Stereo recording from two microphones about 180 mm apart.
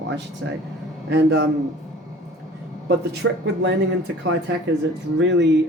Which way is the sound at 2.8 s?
65° right (ahead or behind).